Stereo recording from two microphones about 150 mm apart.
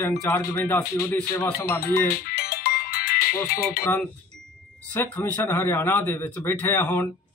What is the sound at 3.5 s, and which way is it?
Speech, 90° left.